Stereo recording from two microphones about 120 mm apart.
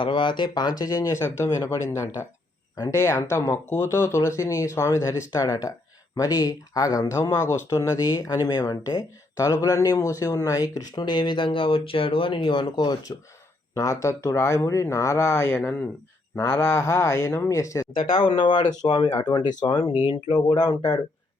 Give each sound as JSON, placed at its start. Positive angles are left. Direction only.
{"t": 0.0, "sound": "speech", "side_deg": 40}
{"t": 18.1, "sound": "speech", "side_deg": 45}
{"t": 19.6, "sound": "speech", "side_deg": 45}